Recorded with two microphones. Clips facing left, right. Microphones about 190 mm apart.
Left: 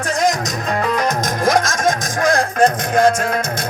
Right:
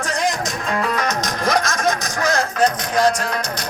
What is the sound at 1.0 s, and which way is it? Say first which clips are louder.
Music: left 4 dB; 50° left (ahead or behind).